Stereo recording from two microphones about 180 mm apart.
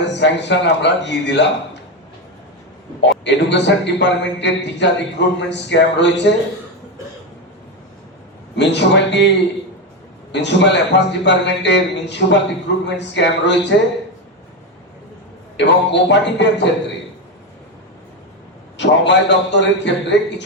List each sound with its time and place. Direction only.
0.0 s a man's voice: 75° left (ahead or behind)
3.0 s a man's voice: 75° left (ahead or behind)
8.5 s a man's voice: 75° left (ahead or behind)
10.3 s a man's voice: 75° left (ahead or behind)
15.5 s a man's voice: 75° left (ahead or behind)
18.8 s a man's voice: 75° left (ahead or behind)